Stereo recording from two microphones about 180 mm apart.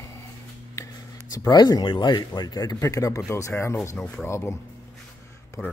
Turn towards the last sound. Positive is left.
turn(degrees=20)  # may be behind; listen again after turning